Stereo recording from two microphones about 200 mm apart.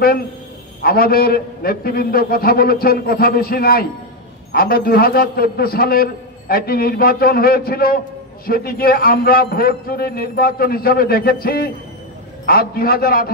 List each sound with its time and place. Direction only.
0.8 s a man's voice: 50° left (ahead or behind)